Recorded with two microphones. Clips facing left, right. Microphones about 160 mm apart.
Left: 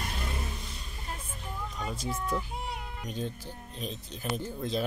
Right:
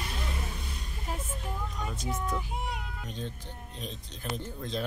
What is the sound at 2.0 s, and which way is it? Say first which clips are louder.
Speech: right 2 dB; 20° right (ahead or behind).